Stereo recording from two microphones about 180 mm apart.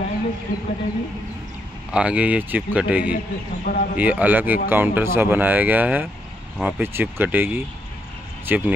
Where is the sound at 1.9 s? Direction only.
5° right (ahead or behind).